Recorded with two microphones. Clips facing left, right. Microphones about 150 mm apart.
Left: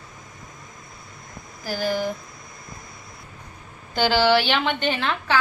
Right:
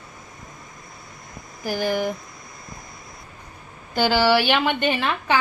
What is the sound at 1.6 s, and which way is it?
Speech, 15° right (ahead or behind).